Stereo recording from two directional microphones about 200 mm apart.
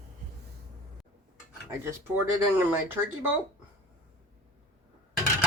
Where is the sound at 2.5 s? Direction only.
10° right (ahead or behind).